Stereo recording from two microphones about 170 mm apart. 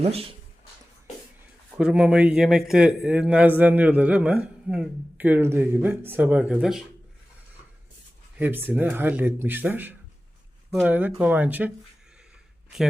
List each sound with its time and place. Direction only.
0.0 s speech: 35° right (ahead or behind)
1.7 s speech: 5° right (ahead or behind)
8.4 s speech: 10° right (ahead or behind)